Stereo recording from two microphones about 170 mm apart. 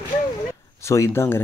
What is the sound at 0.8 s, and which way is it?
Speech, 15° left (ahead or behind).